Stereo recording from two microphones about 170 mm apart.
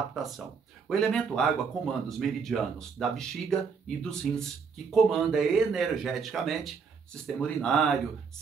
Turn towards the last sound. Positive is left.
turn(degrees=0)  # may be behind; listen again after turning